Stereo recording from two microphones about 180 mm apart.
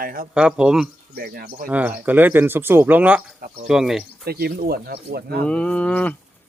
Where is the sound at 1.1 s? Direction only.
60° right (ahead or behind).